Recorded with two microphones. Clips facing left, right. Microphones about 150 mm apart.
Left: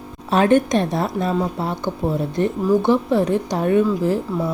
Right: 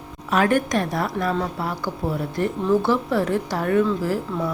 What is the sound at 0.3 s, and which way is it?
Speech, 25° left (ahead or behind).